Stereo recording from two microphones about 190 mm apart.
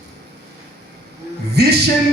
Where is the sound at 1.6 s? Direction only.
60° right (ahead or behind).